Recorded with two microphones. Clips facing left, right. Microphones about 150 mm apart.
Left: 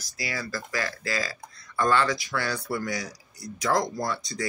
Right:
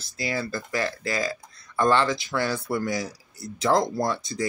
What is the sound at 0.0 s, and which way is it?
Speech, 25° right (ahead or behind).